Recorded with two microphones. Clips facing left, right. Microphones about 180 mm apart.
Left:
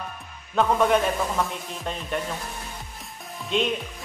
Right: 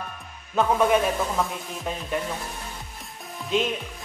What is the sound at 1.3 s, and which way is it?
Speech, centre (ahead or behind).